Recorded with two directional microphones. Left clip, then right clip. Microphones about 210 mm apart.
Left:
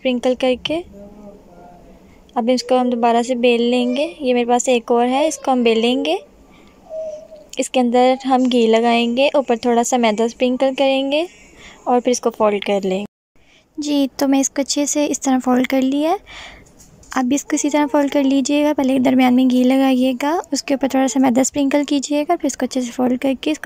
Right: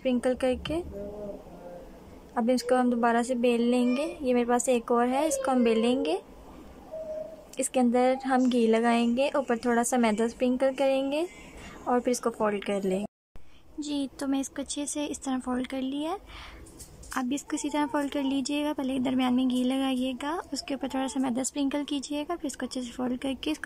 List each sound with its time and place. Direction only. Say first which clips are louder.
0.0 s a woman's voice: left 9 dB; 5° left (ahead or behind)
2.3 s a woman's voice: left 9 dB; 5° left (ahead or behind)
7.5 s a woman's voice: left 10 dB; 5° left (ahead or behind)
13.8 s a woman's voice: left 14 dB; 25° left (ahead or behind)